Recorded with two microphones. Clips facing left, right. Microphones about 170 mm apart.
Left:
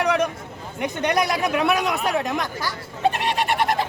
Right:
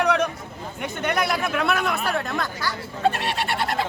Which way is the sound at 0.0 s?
10° left (ahead or behind).